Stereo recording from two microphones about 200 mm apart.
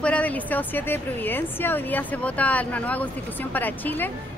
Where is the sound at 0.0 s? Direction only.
5° left (ahead or behind).